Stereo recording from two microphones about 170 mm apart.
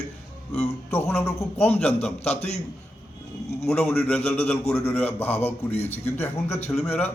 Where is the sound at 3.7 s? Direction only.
5° left (ahead or behind).